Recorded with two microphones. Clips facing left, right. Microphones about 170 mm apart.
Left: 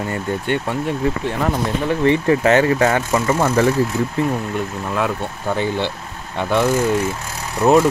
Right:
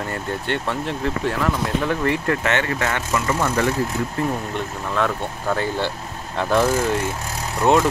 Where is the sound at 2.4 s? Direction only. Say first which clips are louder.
Left 8 dB; 35° left (ahead or behind).